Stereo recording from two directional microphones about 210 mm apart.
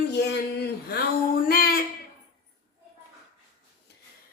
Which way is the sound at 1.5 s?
45° left (ahead or behind).